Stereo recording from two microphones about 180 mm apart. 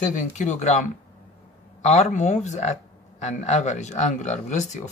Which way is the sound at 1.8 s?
40° left (ahead or behind).